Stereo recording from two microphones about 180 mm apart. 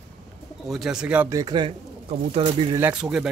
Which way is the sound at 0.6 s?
Centre (ahead or behind).